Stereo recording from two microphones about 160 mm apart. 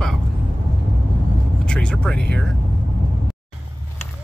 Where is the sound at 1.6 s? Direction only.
5° left (ahead or behind).